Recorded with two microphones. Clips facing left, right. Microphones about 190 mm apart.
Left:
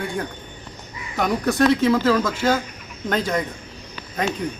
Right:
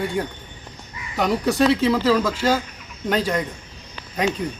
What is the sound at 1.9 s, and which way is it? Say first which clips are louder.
Speech: even; 5° right (ahead or behind).